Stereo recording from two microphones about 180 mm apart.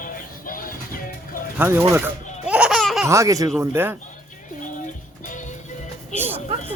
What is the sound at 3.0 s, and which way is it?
Speech, 15° right (ahead or behind).